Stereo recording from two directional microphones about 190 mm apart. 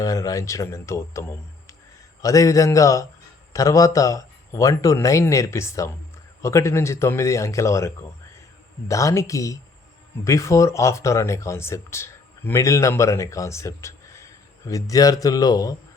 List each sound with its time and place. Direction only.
0.0 s speech: 20° left (ahead or behind)